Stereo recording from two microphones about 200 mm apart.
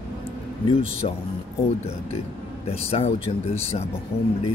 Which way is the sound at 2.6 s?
30° left (ahead or behind).